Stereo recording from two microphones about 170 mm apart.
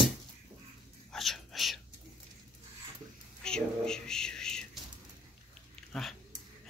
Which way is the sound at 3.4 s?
5° left (ahead or behind).